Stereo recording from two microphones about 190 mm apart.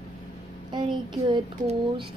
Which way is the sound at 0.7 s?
25° right (ahead or behind).